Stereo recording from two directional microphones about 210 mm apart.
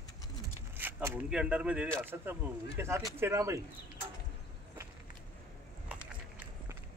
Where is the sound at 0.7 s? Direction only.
10° right (ahead or behind).